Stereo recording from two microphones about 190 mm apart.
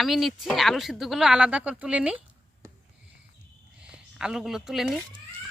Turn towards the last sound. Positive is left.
turn(degrees=0)  # may be behind; listen again after turning